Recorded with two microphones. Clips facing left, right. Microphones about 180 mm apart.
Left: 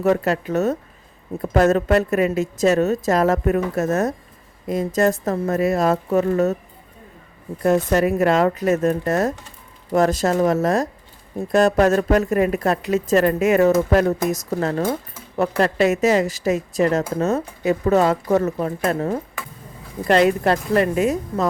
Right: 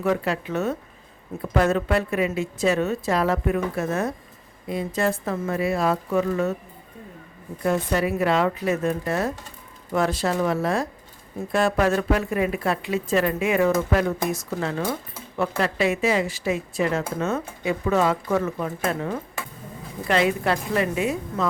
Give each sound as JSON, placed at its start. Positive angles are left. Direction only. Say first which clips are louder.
{"t": 0.0, "sound": "a woman's voice", "louder": "left 5 dB", "side_deg": 40}
{"t": 7.6, "sound": "a woman's voice", "louder": "left 5 dB", "side_deg": 45}